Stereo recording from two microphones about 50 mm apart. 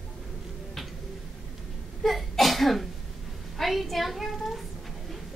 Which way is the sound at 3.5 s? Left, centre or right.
Centre.